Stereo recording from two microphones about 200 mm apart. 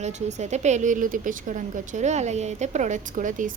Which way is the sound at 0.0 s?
35° right (ahead or behind).